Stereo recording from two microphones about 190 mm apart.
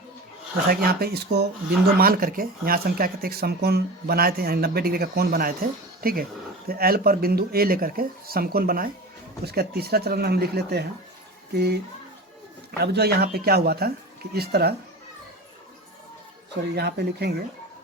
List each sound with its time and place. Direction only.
0.7 s speech: 55° right (ahead or behind)
12.8 s speech: 60° right (ahead or behind)
16.7 s speech: 60° right (ahead or behind)